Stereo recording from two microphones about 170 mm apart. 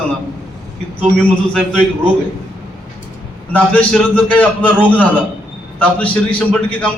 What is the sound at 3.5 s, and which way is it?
A man's voice, 10° left (ahead or behind).